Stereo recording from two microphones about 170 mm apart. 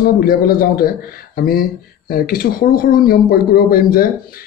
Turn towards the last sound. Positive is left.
turn(degrees=60)  # may be behind; listen again after turning